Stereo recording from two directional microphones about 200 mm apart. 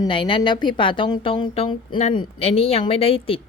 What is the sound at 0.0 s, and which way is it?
Speech, 25° left (ahead or behind).